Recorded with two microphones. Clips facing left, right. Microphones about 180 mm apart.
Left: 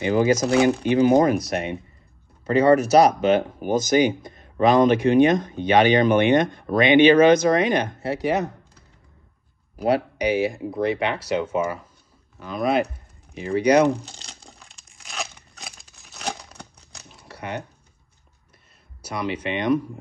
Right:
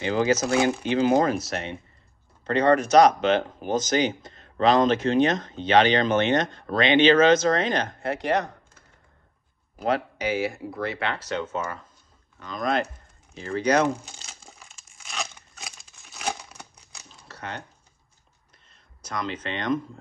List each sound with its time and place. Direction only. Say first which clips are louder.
0.0 s speech: left 4 dB; 10° left (ahead or behind)
9.8 s speech: left 4 dB; 10° left (ahead or behind)
14.5 s crumpling: left 1 dB; 5° right (ahead or behind)
17.3 s a sound: left 5 dB; 10° left (ahead or behind)
19.0 s speech: left 4 dB; 10° left (ahead or behind)